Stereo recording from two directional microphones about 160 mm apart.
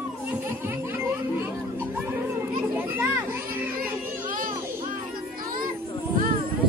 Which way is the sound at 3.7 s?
60° right (ahead or behind).